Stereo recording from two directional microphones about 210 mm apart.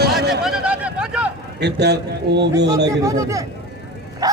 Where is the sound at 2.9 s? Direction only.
15° right (ahead or behind).